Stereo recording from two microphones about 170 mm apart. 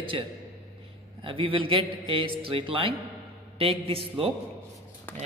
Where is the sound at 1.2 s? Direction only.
30° right (ahead or behind).